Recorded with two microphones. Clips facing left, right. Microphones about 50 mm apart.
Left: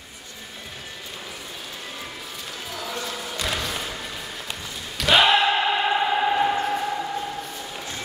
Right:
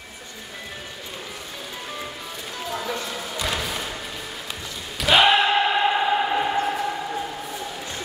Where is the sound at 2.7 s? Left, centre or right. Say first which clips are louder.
Right 5 dB; right.